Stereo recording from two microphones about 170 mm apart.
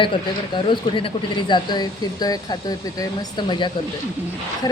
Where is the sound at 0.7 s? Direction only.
30° left (ahead or behind).